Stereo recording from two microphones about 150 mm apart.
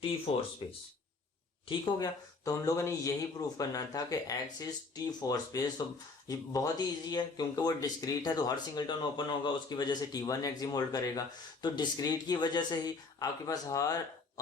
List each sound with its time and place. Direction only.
0.3 s speech: 35° left (ahead or behind)
2.0 s speech: 25° left (ahead or behind)